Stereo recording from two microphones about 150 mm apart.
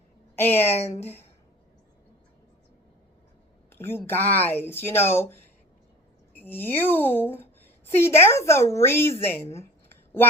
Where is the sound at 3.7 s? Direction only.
15° left (ahead or behind).